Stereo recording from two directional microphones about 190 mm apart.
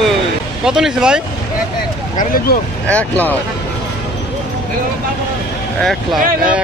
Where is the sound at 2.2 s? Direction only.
50° left (ahead or behind).